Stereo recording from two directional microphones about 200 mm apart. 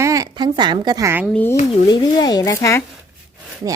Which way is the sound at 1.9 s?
20° left (ahead or behind).